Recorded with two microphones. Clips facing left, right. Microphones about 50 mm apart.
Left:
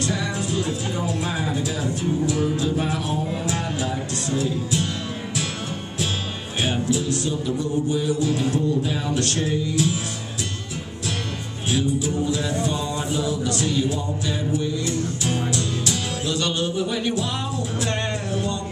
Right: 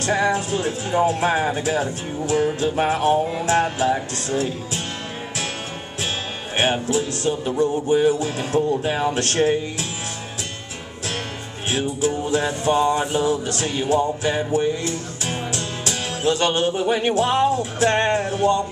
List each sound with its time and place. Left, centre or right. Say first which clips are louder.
0.0 s speech: right 6 dB; right
6.6 s speech: right 3 dB; right
11.7 s speech: right 1 dB; right
15.2 s music: even; right